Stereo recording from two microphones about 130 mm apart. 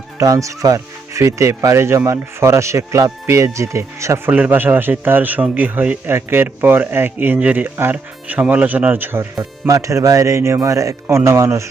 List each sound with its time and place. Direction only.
0.2 s speech: 25° right (ahead or behind)
4.3 s speech: 10° right (ahead or behind)
9.4 s speech: 25° right (ahead or behind)